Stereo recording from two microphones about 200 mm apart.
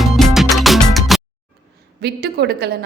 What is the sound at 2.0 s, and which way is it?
Speech, 55° right (ahead or behind).